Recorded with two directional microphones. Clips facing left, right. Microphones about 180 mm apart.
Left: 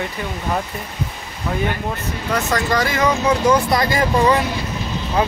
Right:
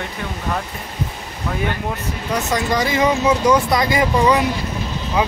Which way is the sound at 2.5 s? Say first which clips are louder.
Right 2 dB; 20° right (ahead or behind).